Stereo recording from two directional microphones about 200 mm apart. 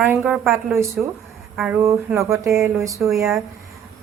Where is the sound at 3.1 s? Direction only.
Centre (ahead or behind).